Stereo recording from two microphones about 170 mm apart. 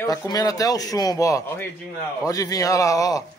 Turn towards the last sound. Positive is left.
turn(degrees=20)  # may be behind; listen again after turning